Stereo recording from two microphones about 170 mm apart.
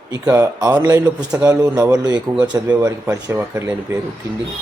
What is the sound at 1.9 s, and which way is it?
Speech, 25° right (ahead or behind).